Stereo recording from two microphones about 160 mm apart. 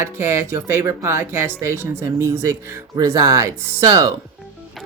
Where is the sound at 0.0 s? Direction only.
15° right (ahead or behind).